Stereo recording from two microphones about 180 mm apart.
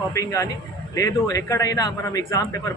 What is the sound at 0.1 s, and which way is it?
A man's voice, 15° left (ahead or behind).